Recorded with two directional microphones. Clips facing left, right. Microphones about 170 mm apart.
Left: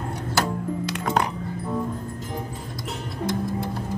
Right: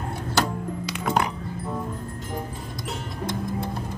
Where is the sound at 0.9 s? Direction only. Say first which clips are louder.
Right 1 dB; centre (ahead or behind).